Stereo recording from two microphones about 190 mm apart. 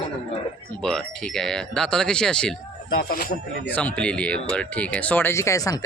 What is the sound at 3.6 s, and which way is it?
Speech, 10° left (ahead or behind).